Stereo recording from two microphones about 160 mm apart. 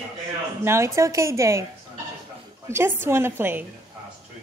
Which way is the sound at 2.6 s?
15° right (ahead or behind).